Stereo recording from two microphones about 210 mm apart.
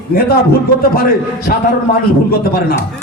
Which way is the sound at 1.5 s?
45° left (ahead or behind).